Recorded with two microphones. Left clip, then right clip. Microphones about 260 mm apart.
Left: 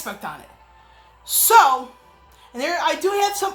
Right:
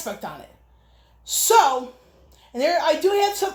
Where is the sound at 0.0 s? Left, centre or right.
Centre.